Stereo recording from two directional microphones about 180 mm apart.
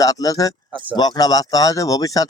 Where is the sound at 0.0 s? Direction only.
20° left (ahead or behind).